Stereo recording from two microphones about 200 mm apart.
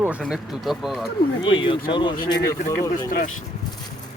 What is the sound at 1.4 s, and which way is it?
Speech, 25° left (ahead or behind).